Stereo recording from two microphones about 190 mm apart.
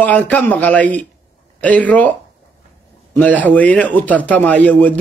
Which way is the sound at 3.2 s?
10° left (ahead or behind).